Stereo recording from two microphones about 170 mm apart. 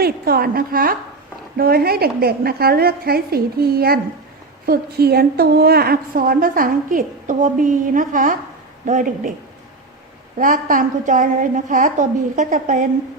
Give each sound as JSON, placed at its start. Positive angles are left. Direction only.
{"t": 0.0, "sound": "a woman's voice", "side_deg": -65}
{"t": 10.3, "sound": "a woman's voice", "side_deg": -55}